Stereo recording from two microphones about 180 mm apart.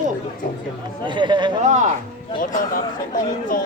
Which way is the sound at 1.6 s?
40° right (ahead or behind).